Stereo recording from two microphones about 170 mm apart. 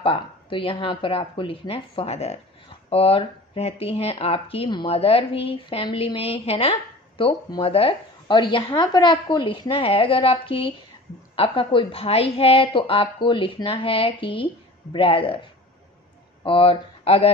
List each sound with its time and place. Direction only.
0.0 s speech: 30° left (ahead or behind)